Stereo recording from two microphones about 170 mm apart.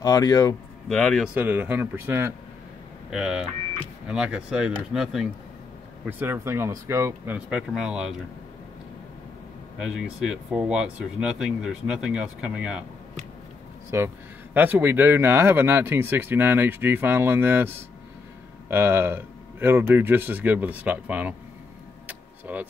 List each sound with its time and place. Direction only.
0.0 s speech: 20° left (ahead or behind)
0.8 s speech: 5° left (ahead or behind)
1.3 s speech: 10° right (ahead or behind)
3.1 s speech: 5° right (ahead or behind)
6.0 s speech: 10° right (ahead or behind)
9.8 s speech: 5° right (ahead or behind)
13.8 s speech: 15° right (ahead or behind)
22.0 s car: 10° right (ahead or behind)